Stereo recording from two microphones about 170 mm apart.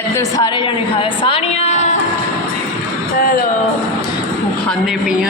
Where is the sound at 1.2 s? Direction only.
40° left (ahead or behind).